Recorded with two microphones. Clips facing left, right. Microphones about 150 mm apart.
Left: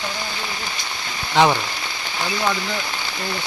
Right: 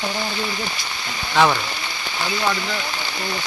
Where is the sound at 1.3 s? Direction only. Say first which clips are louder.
Left 1 dB; 20° left (ahead or behind).